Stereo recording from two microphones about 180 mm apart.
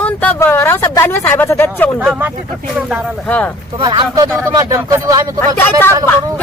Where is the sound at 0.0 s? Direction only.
10° left (ahead or behind).